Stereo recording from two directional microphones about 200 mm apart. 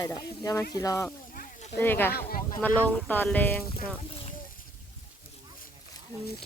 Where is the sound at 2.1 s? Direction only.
45° left (ahead or behind).